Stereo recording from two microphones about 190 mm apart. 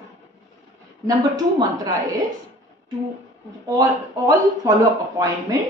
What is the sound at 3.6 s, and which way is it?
Speech, 20° right (ahead or behind).